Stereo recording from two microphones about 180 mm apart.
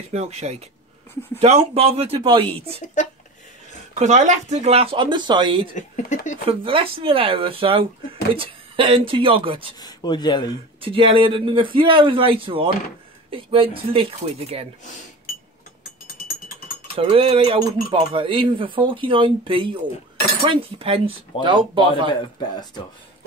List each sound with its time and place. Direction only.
0.1 s speech: 35° right (ahead or behind)
3.9 s speech: 40° right (ahead or behind); by 5.6 s 25° right (ahead or behind)
5.8 s speech: 40° left (ahead or behind)
6.6 s speech: 30° right (ahead or behind)
9.8 s speech: 25° left (ahead or behind)
10.8 s speech: 30° right (ahead or behind)
16.9 s speech: 30° right (ahead or behind)